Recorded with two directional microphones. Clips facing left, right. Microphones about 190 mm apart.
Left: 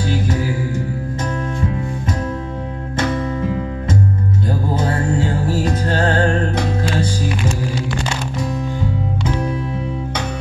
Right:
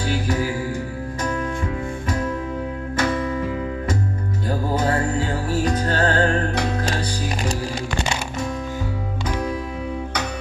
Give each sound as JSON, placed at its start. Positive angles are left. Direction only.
{"t": 5.6, "sound": "music", "side_deg": 25}